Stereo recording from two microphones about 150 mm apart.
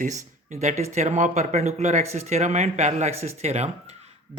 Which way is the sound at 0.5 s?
50° right (ahead or behind).